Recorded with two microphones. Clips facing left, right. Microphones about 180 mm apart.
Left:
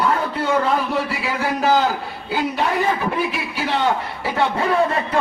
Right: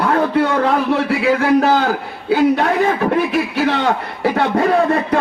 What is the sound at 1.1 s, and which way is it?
A man's voice, 60° right (ahead or behind).